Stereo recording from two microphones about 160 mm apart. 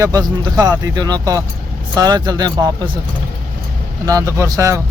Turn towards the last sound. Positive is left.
turn(degrees=-20)  # may be behind; listen again after turning